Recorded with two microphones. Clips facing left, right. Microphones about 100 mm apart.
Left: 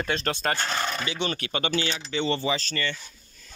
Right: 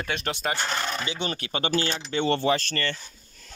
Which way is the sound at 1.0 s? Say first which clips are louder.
Left 1 dB; 30° right (ahead or behind).